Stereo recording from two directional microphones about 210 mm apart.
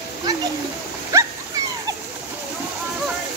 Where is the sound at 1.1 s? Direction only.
15° right (ahead or behind).